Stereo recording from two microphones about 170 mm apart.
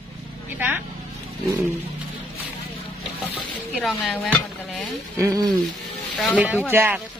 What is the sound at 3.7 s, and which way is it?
Chopping, centre (ahead or behind).